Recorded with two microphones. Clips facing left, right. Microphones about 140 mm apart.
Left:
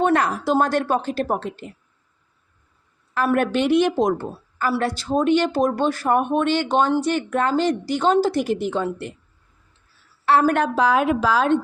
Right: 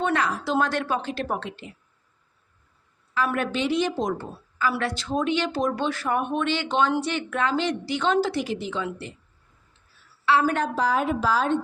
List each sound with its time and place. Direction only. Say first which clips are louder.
0.0 s speech: left 5 dB; 50° left (ahead or behind)
3.3 s a woman's voice: left 9 dB; 55° left (ahead or behind)
4.7 s speech: left 5 dB; 40° left (ahead or behind)
10.2 s a woman's voice: left 4 dB; 50° left (ahead or behind); by 11.5 s 85° left